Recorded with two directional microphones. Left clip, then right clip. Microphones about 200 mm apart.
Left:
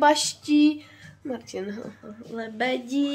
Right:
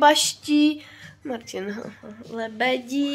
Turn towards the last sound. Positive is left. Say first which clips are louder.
# right 2 dB
turn(degrees=10)  # may be behind; listen again after turning